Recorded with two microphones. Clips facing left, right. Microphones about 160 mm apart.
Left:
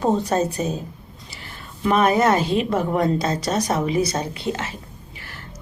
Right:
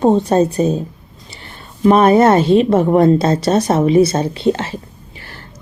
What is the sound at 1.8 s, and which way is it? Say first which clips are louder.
Speech: right 8 dB; 30° right (ahead or behind).